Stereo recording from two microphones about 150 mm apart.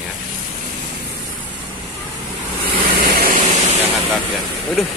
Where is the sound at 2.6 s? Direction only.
75° right (ahead or behind).